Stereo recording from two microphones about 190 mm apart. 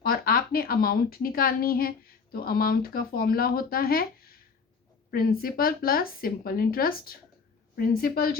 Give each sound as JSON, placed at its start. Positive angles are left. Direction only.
{"t": 0.0, "sound": "a woman's voice", "side_deg": 50}